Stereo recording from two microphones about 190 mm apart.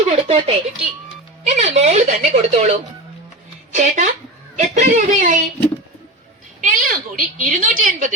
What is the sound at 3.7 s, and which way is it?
Speech, 40° right (ahead or behind).